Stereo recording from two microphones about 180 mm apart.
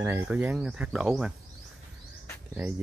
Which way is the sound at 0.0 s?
10° right (ahead or behind).